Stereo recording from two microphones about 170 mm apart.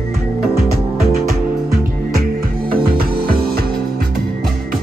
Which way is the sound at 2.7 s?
60° right (ahead or behind).